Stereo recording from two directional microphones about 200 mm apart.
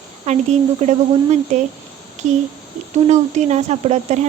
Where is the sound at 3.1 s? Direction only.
35° right (ahead or behind).